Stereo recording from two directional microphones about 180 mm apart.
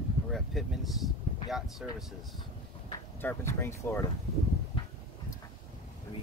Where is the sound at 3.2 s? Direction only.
10° left (ahead or behind).